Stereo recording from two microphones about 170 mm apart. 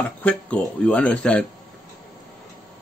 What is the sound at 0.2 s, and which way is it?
Speech, 10° left (ahead or behind).